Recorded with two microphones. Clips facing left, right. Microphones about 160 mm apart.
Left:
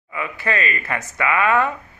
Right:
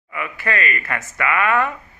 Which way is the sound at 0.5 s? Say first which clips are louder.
Even; 20° left (ahead or behind).